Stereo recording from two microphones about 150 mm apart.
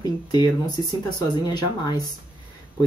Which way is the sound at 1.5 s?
25° left (ahead or behind).